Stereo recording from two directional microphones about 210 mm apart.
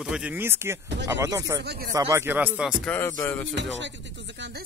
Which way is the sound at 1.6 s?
50° right (ahead or behind).